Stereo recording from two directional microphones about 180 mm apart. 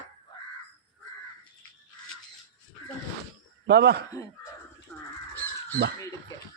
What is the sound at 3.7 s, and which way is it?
Speech, 65° right (ahead or behind).